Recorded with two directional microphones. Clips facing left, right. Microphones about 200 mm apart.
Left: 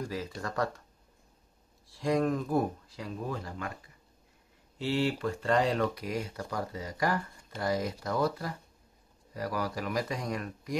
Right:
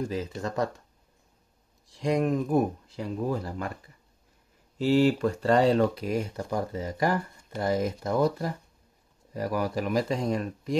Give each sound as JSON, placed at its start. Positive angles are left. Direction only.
{"t": 0.0, "sound": "speech", "side_deg": -20}
{"t": 1.9, "sound": "speech", "side_deg": -20}
{"t": 4.7, "sound": "speech", "side_deg": -40}